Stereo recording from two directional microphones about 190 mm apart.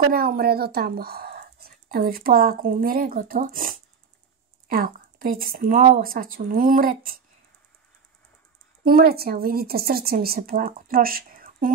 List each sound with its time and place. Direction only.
0.0 s speech: 50° right (ahead or behind)
8.8 s speech: 55° right (ahead or behind)